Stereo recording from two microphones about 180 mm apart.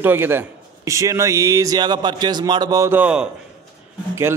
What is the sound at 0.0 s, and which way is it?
A man's voice, 10° right (ahead or behind).